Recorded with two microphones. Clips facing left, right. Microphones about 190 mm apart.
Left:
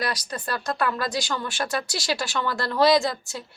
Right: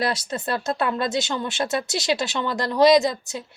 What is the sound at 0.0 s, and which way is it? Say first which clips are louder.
A woman's voice: right 4 dB; 25° right (ahead or behind).